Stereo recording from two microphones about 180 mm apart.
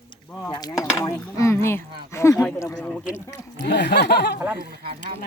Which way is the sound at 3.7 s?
70° left (ahead or behind).